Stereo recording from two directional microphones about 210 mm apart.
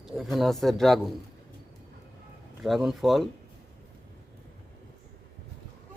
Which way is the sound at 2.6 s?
Centre (ahead or behind).